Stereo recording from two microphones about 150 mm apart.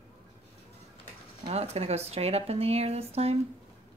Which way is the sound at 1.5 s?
45° right (ahead or behind).